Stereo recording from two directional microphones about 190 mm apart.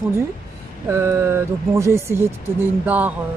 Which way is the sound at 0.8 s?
15° right (ahead or behind).